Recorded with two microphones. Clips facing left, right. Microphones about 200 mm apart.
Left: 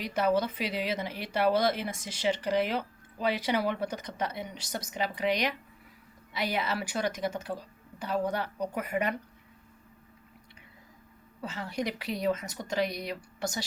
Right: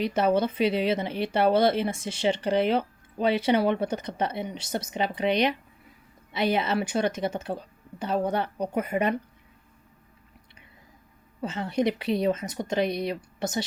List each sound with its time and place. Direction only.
0.0 s speech: 25° right (ahead or behind)
11.3 s speech: 20° right (ahead or behind)